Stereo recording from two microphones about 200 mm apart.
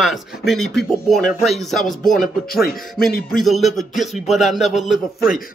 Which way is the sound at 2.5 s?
50° left (ahead or behind).